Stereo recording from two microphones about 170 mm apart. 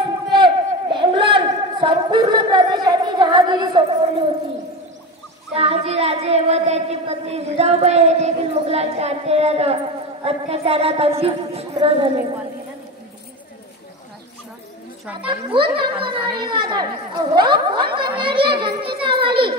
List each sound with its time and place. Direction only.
0.3 s a sound: 30° right (ahead or behind)
5.5 s a woman's voice: 35° right (ahead or behind)
15.2 s a woman's voice: 30° right (ahead or behind)